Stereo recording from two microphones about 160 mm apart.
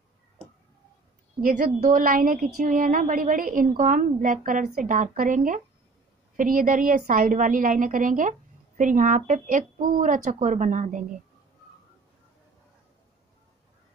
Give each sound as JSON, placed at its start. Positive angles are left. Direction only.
{"t": 1.4, "sound": "a woman's voice", "side_deg": -55}